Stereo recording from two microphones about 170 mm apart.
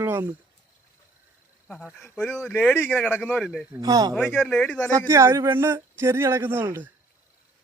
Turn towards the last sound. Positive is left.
turn(degrees=-15)  # may be behind; listen again after turning